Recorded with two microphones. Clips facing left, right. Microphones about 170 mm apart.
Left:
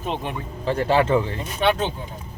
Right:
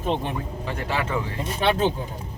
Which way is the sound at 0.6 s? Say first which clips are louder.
Left 10 dB; 30° left (ahead or behind).